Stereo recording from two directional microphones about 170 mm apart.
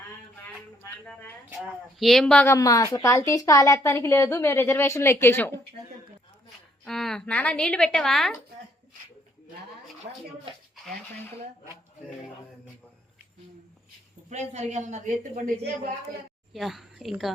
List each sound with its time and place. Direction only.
0.8 s a woman's voice: 10° left (ahead or behind)
2.0 s a woman's voice: centre (ahead or behind)
2.5 s a woman's voice: 20° left (ahead or behind)
6.8 s a woman's voice: centre (ahead or behind)
14.3 s a woman's voice: 45° right (ahead or behind)
16.5 s a woman's voice: centre (ahead or behind)